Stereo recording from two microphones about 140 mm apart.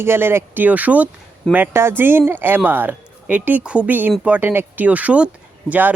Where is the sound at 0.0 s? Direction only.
15° right (ahead or behind).